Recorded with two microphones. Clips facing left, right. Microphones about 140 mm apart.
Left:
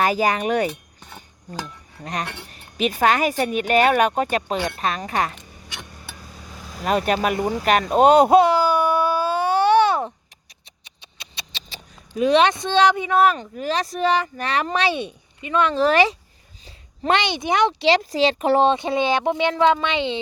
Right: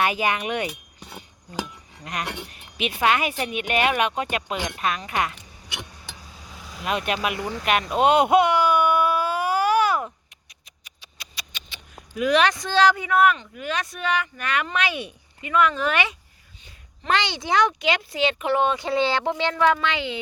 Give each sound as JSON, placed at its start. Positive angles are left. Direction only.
{"t": 0.0, "sound": "speech", "side_deg": 35}
{"t": 0.7, "sound": "chink", "side_deg": -10}
{"t": 1.5, "sound": "speech", "side_deg": -15}
{"t": 2.5, "sound": "speech", "side_deg": 40}
{"t": 6.5, "sound": "speech", "side_deg": 40}
{"t": 7.3, "sound": "speech", "side_deg": 15}
{"t": 7.6, "sound": "baby cry", "side_deg": 40}
{"t": 10.8, "sound": "a sound", "side_deg": 25}
{"t": 11.7, "sound": "speech", "side_deg": 30}